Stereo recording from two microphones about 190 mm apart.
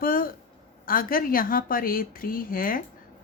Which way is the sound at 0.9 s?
50° left (ahead or behind).